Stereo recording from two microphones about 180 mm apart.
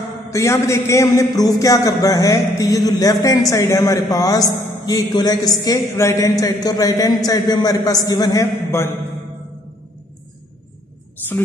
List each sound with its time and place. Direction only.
0.3 s a man's voice: 15° left (ahead or behind)
1.1 s music: 20° left (ahead or behind)